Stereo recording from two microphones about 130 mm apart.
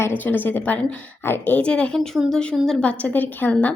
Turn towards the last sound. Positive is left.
turn(degrees=15)  # may be behind; listen again after turning